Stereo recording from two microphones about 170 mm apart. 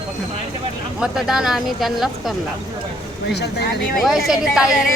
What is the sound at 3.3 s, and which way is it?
Speech, 75° left (ahead or behind).